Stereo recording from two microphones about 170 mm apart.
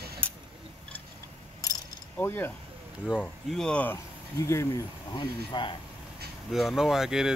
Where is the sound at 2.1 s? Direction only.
10° left (ahead or behind); by 5.8 s 25° left (ahead or behind).